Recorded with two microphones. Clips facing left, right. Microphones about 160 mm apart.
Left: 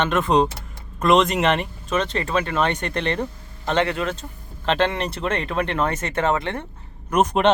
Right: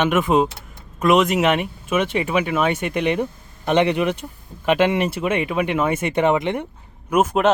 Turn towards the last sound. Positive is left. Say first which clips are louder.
# right 1 dB
turn(degrees=-5)  # may be behind; listen again after turning